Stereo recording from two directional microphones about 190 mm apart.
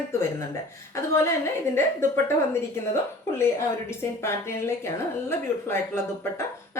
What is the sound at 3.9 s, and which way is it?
A woman's voice, 15° left (ahead or behind).